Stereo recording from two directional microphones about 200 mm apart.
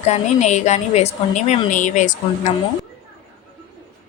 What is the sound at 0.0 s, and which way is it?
A woman's voice, 35° left (ahead or behind).